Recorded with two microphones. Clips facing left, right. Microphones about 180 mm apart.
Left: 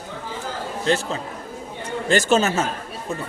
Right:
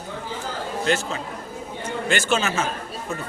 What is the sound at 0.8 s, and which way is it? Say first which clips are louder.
Speech: left 2 dB; 30° left (ahead or behind).